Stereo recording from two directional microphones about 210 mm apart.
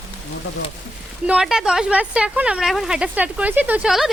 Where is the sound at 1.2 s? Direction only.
5° right (ahead or behind).